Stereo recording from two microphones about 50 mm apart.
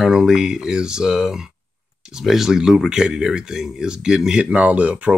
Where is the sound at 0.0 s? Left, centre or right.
Centre.